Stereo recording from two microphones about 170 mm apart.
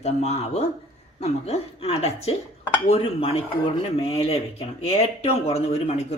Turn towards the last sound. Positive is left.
turn(degrees=35)  # may be behind; listen again after turning